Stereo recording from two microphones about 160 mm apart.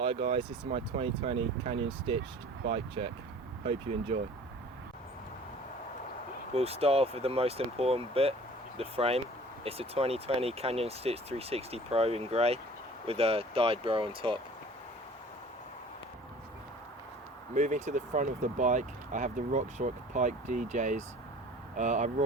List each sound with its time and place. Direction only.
0.0 s speech: 35° right (ahead or behind)
6.5 s speech: 40° right (ahead or behind)
17.5 s speech: 50° right (ahead or behind)